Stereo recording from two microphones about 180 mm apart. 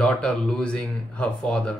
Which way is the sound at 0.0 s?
5° left (ahead or behind).